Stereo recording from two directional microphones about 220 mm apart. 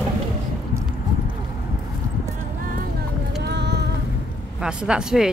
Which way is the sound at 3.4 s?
50° right (ahead or behind).